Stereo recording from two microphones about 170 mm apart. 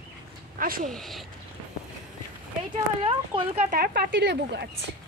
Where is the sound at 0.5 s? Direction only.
55° right (ahead or behind).